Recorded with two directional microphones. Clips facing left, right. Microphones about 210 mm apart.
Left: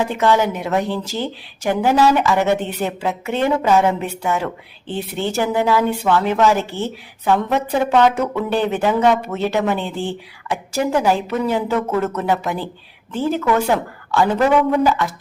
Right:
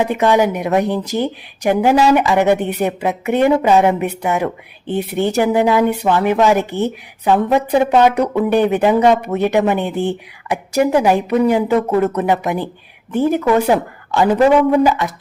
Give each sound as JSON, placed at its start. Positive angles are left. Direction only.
{"t": 0.0, "sound": "a woman's voice", "side_deg": -15}